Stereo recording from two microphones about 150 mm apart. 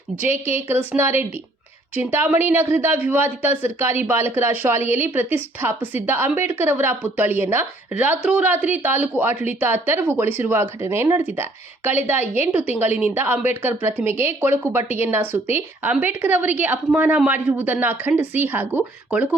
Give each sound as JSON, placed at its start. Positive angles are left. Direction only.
{"t": 0.2, "sound": "a woman's voice", "side_deg": -15}